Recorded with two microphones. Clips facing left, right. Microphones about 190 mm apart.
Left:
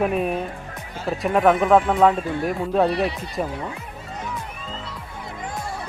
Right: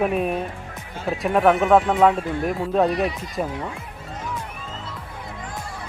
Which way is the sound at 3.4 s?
Centre (ahead or behind).